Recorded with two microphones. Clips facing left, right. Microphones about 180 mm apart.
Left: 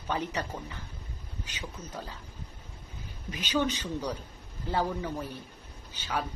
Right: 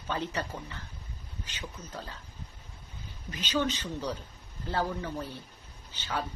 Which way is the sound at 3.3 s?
10° left (ahead or behind).